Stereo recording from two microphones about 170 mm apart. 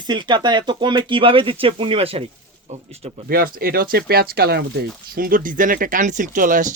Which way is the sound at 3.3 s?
60° right (ahead or behind).